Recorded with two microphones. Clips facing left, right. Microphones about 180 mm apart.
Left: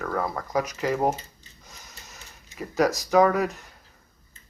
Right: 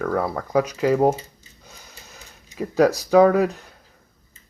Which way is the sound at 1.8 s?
30° right (ahead or behind).